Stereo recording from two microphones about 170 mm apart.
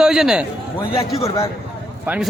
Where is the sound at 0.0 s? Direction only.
5° right (ahead or behind).